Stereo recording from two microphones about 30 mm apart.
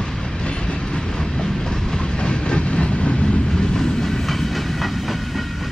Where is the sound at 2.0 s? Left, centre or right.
Left.